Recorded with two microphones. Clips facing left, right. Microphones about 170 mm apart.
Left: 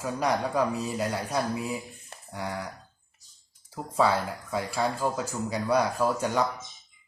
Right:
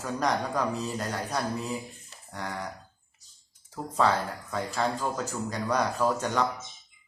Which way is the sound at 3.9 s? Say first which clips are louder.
Left 1 dB; 10° left (ahead or behind).